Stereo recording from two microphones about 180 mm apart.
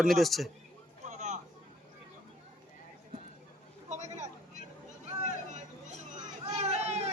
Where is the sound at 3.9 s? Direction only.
40° right (ahead or behind).